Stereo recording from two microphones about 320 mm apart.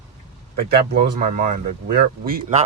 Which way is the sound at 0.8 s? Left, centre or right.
Right.